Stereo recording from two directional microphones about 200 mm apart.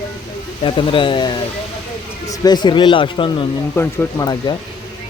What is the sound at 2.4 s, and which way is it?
Speech, 20° left (ahead or behind).